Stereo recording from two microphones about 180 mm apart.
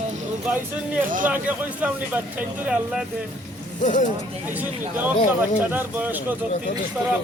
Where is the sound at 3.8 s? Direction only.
45° left (ahead or behind).